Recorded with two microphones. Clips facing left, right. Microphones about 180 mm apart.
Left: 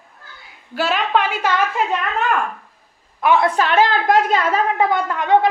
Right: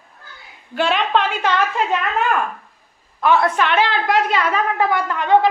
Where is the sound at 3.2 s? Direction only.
15° left (ahead or behind).